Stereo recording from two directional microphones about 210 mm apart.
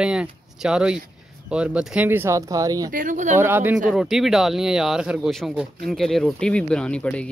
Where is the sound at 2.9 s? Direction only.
40° right (ahead or behind).